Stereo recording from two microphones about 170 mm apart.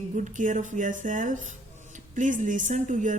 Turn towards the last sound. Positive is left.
turn(degrees=-45)  # may be behind; listen again after turning